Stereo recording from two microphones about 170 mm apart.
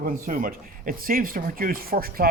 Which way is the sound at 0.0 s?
55° right (ahead or behind).